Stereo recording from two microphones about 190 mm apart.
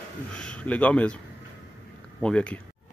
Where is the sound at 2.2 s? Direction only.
5° left (ahead or behind).